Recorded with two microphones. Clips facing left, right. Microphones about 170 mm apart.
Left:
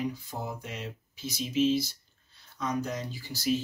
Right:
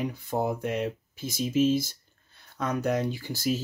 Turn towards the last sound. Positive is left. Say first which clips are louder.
# right 1 dB
turn(degrees=-50)  # may be behind; listen again after turning